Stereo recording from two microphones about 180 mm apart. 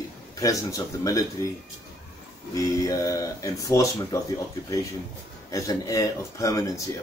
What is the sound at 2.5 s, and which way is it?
Speech, 20° left (ahead or behind).